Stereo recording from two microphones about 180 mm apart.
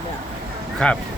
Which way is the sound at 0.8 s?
5° left (ahead or behind).